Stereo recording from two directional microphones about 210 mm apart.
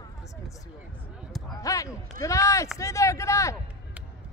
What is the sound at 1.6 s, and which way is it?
Speech, 15° left (ahead or behind).